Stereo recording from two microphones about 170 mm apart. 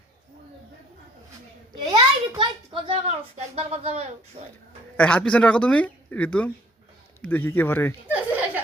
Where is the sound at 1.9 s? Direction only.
30° right (ahead or behind).